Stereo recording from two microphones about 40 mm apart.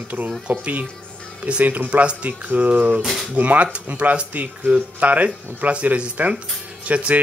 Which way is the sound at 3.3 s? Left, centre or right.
Right.